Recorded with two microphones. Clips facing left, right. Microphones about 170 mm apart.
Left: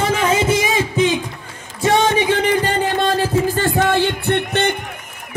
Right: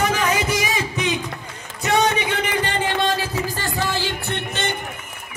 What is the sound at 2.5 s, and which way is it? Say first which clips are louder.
Music: left 5 dB; 40° left (ahead or behind).